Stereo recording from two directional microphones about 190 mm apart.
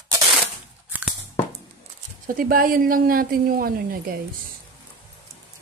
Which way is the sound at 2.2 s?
45° right (ahead or behind).